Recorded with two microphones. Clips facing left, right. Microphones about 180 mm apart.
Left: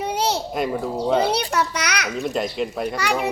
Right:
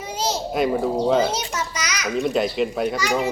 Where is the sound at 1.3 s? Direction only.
65° left (ahead or behind).